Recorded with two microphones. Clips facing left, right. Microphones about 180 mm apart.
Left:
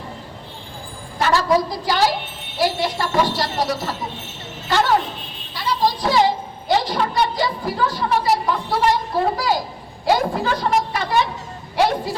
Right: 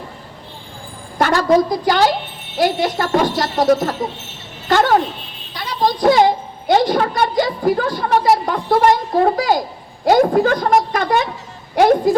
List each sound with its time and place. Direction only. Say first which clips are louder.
1.2 s a child's voice: right 4 dB; 55° right (ahead or behind)